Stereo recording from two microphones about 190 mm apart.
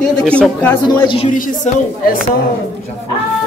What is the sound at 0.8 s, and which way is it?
Speech, 25° left (ahead or behind).